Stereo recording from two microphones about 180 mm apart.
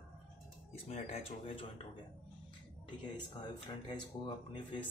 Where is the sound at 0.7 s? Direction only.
35° left (ahead or behind).